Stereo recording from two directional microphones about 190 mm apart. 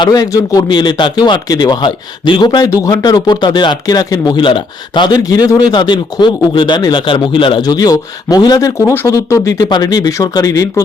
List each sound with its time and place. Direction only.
0.0 s speech: 20° left (ahead or behind)